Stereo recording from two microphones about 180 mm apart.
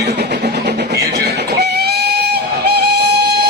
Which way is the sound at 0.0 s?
65° right (ahead or behind).